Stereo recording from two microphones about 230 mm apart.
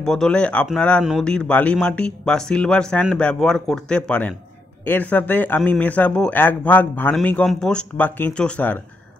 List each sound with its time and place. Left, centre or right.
0.0 s speech: centre